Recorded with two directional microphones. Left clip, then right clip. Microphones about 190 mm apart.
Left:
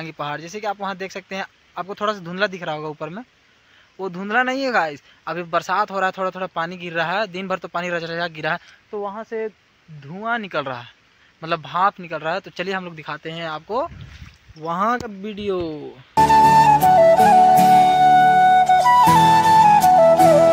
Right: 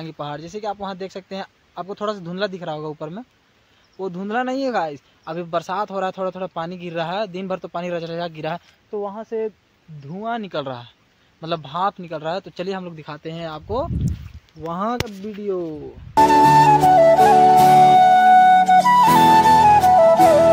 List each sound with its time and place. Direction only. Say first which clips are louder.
0.0 s speech: left 2 dB; 10° left (ahead or behind)
15.0 s speech: left 1 dB; 30° left (ahead or behind)
16.2 s flute: even; centre (ahead or behind)